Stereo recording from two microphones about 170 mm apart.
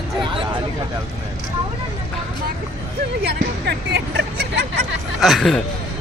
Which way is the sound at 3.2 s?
75° right (ahead or behind).